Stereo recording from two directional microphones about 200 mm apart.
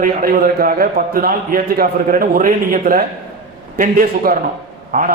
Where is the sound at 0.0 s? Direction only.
45° right (ahead or behind).